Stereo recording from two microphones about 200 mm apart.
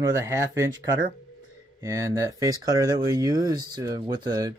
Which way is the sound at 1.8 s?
15° right (ahead or behind).